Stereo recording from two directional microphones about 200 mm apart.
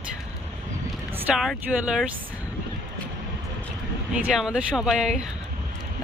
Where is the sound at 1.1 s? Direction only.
Centre (ahead or behind).